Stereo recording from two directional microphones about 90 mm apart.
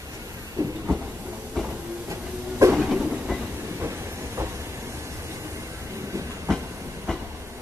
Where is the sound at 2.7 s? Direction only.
10° right (ahead or behind).